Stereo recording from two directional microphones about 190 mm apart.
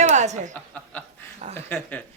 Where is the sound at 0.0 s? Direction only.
40° right (ahead or behind).